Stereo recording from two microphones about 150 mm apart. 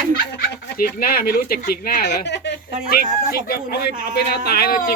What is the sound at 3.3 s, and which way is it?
Speech, 90° left.